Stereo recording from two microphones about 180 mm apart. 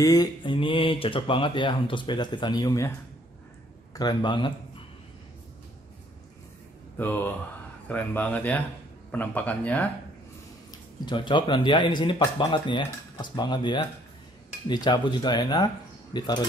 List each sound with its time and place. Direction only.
0.0 s speech: 20° left (ahead or behind)
3.9 s speech: 25° left (ahead or behind)
7.0 s speech: 10° left (ahead or behind)
10.7 s speech: 25° left (ahead or behind)